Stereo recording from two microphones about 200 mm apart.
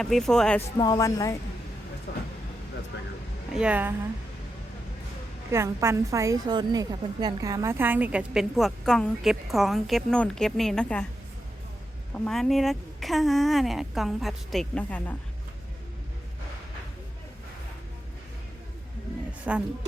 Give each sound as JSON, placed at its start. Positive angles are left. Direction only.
{"t": 0.0, "sound": "a woman's voice", "side_deg": 0}
{"t": 0.8, "sound": "speech", "side_deg": 20}
{"t": 2.1, "sound": "vehicle", "side_deg": 60}
{"t": 2.9, "sound": "a sound", "side_deg": 60}
{"t": 3.5, "sound": "a woman's voice", "side_deg": -5}
{"t": 5.5, "sound": "a woman's voice", "side_deg": -15}
{"t": 12.1, "sound": "a woman's voice", "side_deg": 5}
{"t": 19.5, "sound": "a woman's voice", "side_deg": -10}